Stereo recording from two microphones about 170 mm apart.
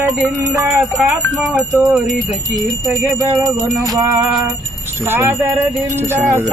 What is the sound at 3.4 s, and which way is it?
Music, 20° right (ahead or behind).